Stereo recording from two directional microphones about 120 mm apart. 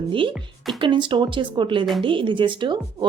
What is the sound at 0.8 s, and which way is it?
Speech, 45° right (ahead or behind).